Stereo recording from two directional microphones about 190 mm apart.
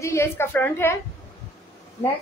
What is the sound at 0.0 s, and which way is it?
Speech, 15° left (ahead or behind).